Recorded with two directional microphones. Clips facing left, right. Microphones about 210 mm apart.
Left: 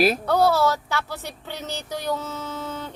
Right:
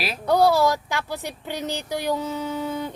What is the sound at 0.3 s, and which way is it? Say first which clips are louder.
Speech: right 1 dB; 15° right (ahead or behind).